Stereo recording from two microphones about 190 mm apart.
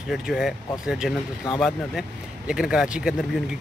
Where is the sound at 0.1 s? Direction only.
Centre (ahead or behind).